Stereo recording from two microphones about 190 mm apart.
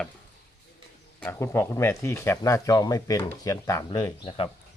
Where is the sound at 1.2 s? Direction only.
10° left (ahead or behind); by 4.4 s 25° left (ahead or behind).